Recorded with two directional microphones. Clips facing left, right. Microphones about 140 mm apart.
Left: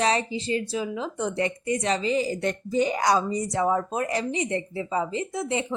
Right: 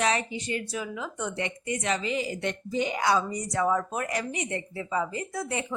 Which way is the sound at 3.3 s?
25° left (ahead or behind).